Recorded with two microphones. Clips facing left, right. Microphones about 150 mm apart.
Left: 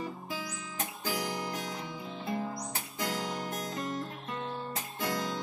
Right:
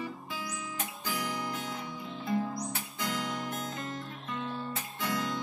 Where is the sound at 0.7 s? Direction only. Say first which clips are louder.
Left 3 dB; 40° left (ahead or behind).